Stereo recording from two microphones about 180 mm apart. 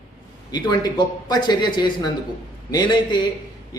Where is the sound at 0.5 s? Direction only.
25° left (ahead or behind).